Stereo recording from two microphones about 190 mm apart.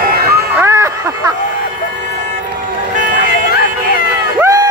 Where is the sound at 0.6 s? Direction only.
15° right (ahead or behind).